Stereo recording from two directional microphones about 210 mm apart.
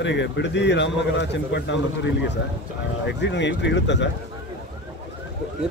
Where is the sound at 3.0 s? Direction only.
55° left (ahead or behind).